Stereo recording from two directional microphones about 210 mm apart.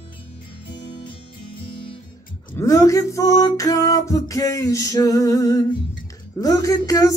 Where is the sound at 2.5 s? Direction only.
15° left (ahead or behind).